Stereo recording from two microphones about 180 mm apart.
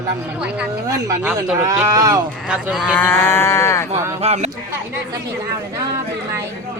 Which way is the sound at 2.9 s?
10° left (ahead or behind).